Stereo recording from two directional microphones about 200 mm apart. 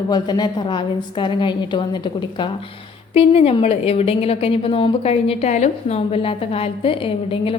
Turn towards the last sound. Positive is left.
turn(degrees=25)  # may be behind; listen again after turning